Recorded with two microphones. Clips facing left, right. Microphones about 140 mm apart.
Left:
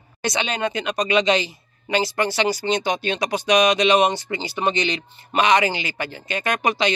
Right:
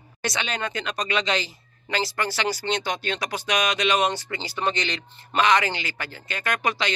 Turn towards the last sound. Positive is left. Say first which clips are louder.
# left 5 dB
turn(degrees=20)  # may be behind; listen again after turning